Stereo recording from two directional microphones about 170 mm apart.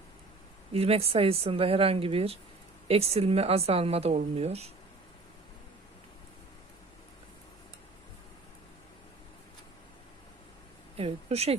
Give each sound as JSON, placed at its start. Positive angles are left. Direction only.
{"t": 0.7, "sound": "a woman's voice", "side_deg": -35}
{"t": 10.9, "sound": "a woman's voice", "side_deg": -35}